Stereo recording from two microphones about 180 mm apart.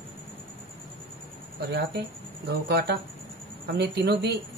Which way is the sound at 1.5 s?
65° right (ahead or behind).